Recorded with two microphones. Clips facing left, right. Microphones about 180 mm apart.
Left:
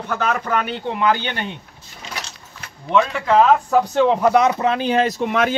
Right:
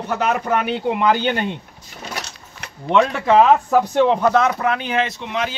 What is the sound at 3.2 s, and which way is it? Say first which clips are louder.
Speech: right 1 dB; 5° right (ahead or behind).